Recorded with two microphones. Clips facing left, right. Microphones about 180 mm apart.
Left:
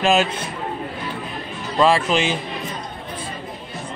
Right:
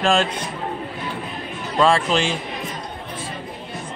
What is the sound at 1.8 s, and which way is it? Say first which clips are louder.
Speech: left 1 dB; 5° left (ahead or behind).